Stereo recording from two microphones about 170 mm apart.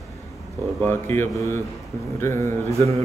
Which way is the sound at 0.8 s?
10° left (ahead or behind).